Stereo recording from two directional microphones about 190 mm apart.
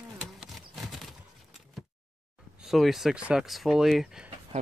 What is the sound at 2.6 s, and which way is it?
Speech, centre (ahead or behind).